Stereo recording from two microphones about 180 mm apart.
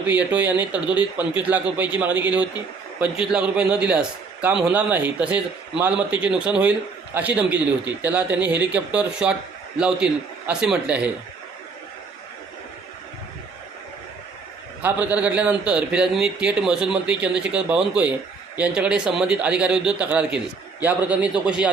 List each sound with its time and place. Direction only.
0.1 s a man's voice: 10° right (ahead or behind)
14.8 s a man's voice: 10° right (ahead or behind)